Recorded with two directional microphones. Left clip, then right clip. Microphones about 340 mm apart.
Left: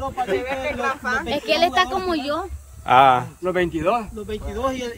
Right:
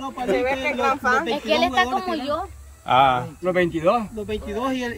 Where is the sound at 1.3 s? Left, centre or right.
Left.